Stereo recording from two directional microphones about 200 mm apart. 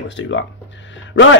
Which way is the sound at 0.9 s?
65° left (ahead or behind).